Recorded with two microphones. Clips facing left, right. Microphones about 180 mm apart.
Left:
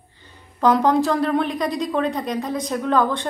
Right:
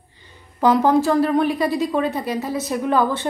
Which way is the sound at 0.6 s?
5° right (ahead or behind).